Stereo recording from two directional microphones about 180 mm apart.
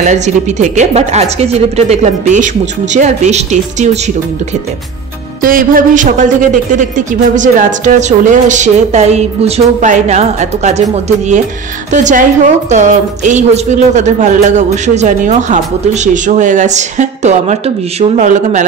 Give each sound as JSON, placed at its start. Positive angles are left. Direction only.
{"t": 0.0, "sound": "a woman's voice", "side_deg": -40}
{"t": 5.4, "sound": "a woman's voice", "side_deg": -50}